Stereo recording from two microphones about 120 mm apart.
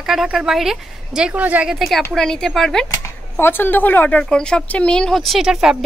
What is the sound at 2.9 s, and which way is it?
A woman's voice, 20° left (ahead or behind).